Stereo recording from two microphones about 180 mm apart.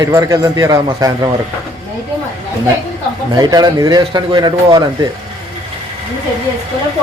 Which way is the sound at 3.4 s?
20° right (ahead or behind).